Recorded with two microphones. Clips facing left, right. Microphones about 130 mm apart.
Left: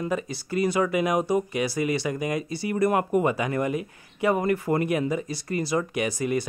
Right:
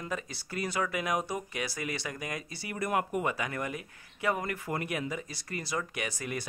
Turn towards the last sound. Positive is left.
turn(degrees=15)  # may be behind; listen again after turning